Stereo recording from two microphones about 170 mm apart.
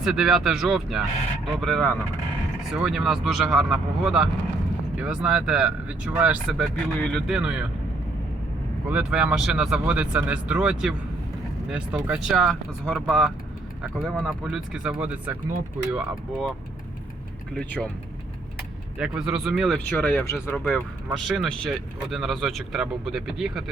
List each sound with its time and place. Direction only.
0.0 s speech: 5° right (ahead or behind)
7.3 s speech: 5° right (ahead or behind)
8.9 s speech: 5° right (ahead or behind)
18.9 s speech: 5° right (ahead or behind); by 20.8 s 15° left (ahead or behind)
21.1 s speech: centre (ahead or behind)